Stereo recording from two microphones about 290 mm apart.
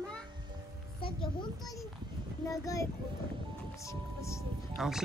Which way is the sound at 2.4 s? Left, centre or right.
Centre.